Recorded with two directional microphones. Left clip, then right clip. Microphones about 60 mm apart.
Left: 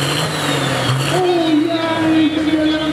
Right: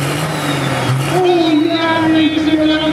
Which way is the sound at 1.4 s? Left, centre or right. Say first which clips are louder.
Right 3 dB; right.